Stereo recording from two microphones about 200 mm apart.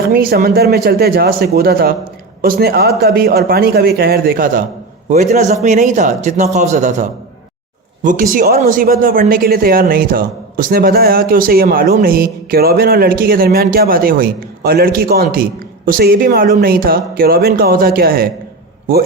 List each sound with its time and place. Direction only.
0.1 s speech: 50° right (ahead or behind)